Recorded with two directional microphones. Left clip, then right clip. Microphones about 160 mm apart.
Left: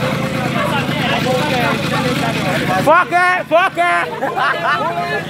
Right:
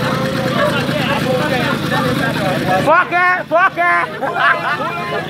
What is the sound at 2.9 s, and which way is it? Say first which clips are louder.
Speech: left 1 dB; 20° left (ahead or behind).